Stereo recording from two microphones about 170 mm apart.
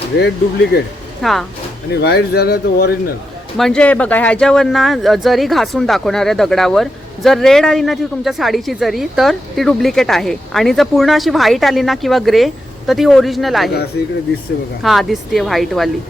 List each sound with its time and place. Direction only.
0.2 s speech: 80° left
1.2 s speech: centre (ahead or behind)
2.0 s speech: 70° left (ahead or behind)
3.6 s speech: 5° left (ahead or behind)
14.8 s speech: centre (ahead or behind)